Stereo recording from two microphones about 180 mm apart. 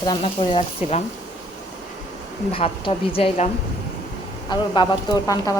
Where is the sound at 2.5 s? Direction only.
30° left (ahead or behind).